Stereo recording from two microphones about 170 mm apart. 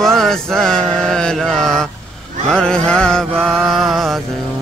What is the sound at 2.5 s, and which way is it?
Mantra, 5° left (ahead or behind).